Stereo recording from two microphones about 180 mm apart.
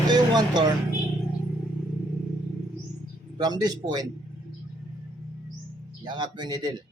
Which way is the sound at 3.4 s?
25° right (ahead or behind).